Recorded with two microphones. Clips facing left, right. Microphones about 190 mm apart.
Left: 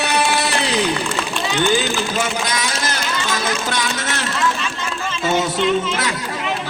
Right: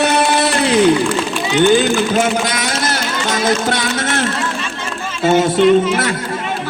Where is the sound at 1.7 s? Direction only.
50° right (ahead or behind).